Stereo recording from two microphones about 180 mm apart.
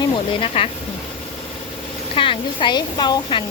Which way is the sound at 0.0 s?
30° left (ahead or behind).